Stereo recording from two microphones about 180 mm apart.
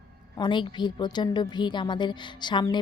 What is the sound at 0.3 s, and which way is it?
A woman's voice, 25° left (ahead or behind).